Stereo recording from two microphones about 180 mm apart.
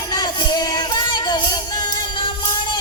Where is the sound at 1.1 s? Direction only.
25° left (ahead or behind).